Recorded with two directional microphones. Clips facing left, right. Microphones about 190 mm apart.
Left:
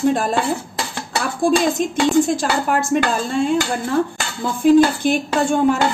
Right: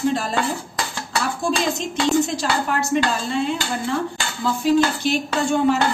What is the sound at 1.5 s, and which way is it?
Speech, 50° left (ahead or behind).